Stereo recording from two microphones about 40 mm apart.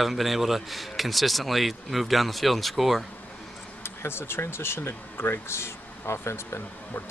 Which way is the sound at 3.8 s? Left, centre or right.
Left.